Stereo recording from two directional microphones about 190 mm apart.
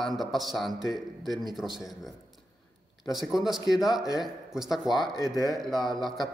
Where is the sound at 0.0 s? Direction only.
Centre (ahead or behind).